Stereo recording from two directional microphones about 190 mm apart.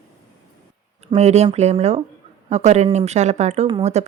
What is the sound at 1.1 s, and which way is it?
Speech, 35° right (ahead or behind).